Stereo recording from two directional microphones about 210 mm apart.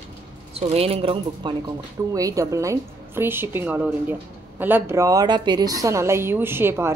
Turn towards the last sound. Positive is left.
turn(degrees=-10)  # may be behind; listen again after turning